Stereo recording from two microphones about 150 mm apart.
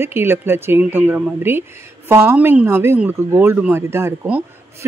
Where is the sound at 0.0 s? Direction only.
15° right (ahead or behind).